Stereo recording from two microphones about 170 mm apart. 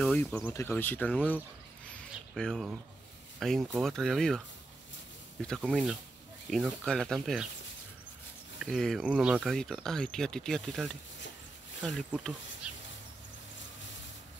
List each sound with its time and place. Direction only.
0.0 s speech: 5° left (ahead or behind)
5.4 s speech: 5° left (ahead or behind)
8.5 s speech: centre (ahead or behind)